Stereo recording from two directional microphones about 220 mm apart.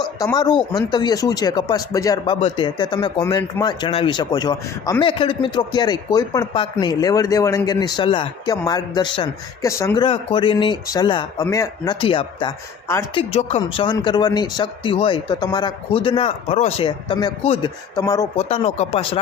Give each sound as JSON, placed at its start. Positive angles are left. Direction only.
{"t": 0.7, "sound": "speech", "side_deg": 20}
{"t": 13.1, "sound": "speech", "side_deg": 25}
{"t": 18.3, "sound": "speech", "side_deg": 30}